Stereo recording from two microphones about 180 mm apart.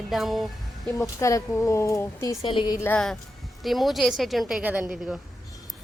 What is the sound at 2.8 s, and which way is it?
A woman's voice, 10° left (ahead or behind).